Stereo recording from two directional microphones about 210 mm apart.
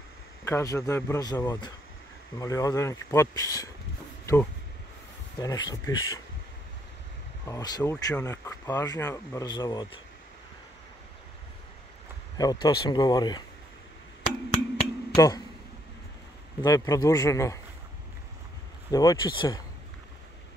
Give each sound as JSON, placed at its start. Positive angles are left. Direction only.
{"t": 0.5, "sound": "speech", "side_deg": 15}
{"t": 5.4, "sound": "speech", "side_deg": 15}
{"t": 7.4, "sound": "speech", "side_deg": 15}
{"t": 12.4, "sound": "speech", "side_deg": 20}
{"t": 14.5, "sound": "a sound", "side_deg": 25}
{"t": 16.6, "sound": "speech", "side_deg": 15}
{"t": 18.9, "sound": "speech", "side_deg": 15}